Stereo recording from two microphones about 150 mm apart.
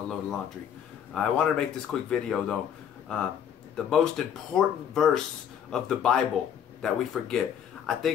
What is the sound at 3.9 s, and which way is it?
Speech, 5° left (ahead or behind).